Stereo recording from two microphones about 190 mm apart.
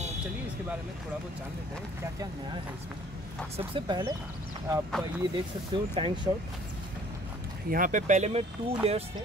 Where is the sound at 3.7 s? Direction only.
25° right (ahead or behind).